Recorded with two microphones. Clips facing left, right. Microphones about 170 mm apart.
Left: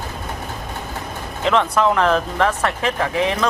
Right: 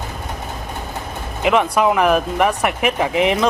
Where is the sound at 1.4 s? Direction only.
10° right (ahead or behind).